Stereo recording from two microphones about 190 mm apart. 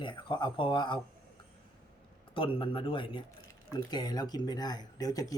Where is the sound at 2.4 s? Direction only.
25° left (ahead or behind).